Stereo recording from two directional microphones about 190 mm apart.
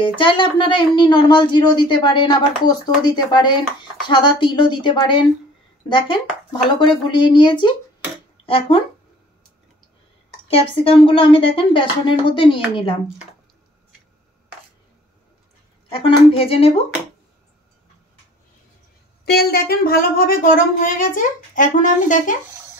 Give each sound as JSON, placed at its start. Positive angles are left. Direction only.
{"t": 0.0, "sound": "a woman's voice", "side_deg": 25}
{"t": 10.5, "sound": "a woman's voice", "side_deg": 30}
{"t": 15.9, "sound": "speech", "side_deg": 30}
{"t": 19.2, "sound": "speech", "side_deg": 55}